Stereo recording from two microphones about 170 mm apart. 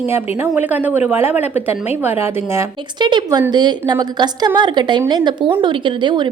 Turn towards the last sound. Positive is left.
turn(degrees=-30)  # may be behind; listen again after turning